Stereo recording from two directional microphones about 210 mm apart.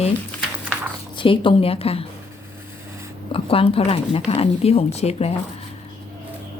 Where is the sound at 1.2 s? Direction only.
25° left (ahead or behind).